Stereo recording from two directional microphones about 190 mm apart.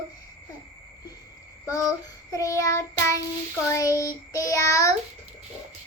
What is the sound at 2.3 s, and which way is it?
Child singing, 20° left (ahead or behind).